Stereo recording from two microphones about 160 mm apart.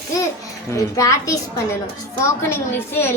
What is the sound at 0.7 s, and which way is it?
A woman's voice, 20° left (ahead or behind).